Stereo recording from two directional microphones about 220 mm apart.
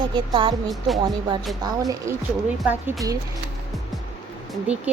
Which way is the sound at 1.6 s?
15° right (ahead or behind).